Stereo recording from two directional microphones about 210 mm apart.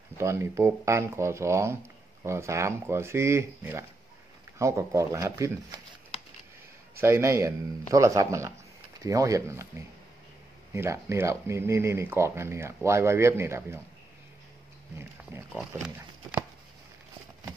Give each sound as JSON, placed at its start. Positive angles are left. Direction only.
{"t": 0.2, "sound": "speech", "side_deg": -15}
{"t": 7.0, "sound": "speech", "side_deg": -10}
{"t": 15.3, "sound": "speech", "side_deg": -10}